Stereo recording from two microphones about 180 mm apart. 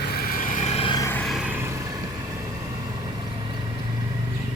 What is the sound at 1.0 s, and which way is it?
Vehicle, 15° left (ahead or behind).